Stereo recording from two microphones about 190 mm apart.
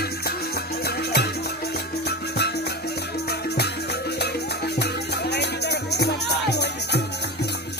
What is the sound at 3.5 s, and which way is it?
Music, 60° left (ahead or behind).